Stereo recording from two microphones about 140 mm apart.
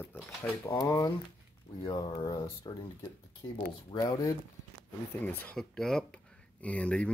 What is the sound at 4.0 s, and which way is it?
Speech, 25° left (ahead or behind).